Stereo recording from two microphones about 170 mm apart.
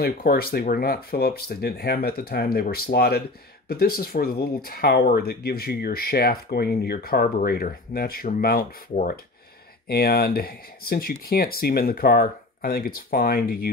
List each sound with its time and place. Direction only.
0.0 s speech: 60° left (ahead or behind)